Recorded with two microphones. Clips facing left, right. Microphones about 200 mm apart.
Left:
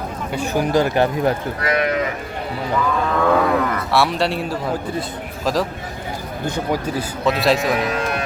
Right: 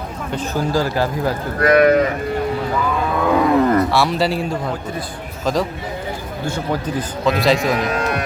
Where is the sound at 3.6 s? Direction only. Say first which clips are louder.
Right 8 dB; 30° right (ahead or behind).